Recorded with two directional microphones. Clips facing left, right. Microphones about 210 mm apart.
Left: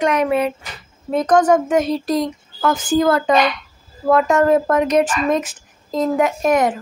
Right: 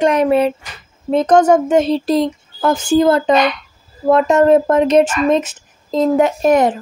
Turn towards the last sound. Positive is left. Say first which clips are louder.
# right 4 dB
turn(degrees=-30)  # may be behind; listen again after turning